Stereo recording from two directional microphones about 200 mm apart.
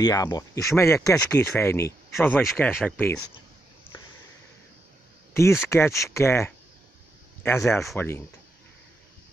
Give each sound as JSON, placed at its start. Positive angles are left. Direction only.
{"t": 0.0, "sound": "speech", "side_deg": 20}
{"t": 3.9, "sound": "a sound", "side_deg": 25}
{"t": 5.3, "sound": "speech", "side_deg": 15}